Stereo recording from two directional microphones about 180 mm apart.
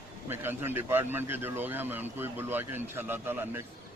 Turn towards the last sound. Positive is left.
turn(degrees=-10)  # may be behind; listen again after turning